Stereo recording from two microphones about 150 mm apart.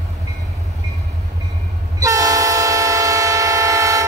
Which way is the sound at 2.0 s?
20° right (ahead or behind).